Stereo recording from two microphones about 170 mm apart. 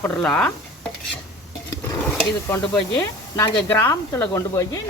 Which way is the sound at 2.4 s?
15° left (ahead or behind).